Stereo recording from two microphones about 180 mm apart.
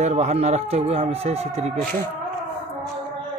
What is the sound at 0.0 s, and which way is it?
Speech, 35° right (ahead or behind).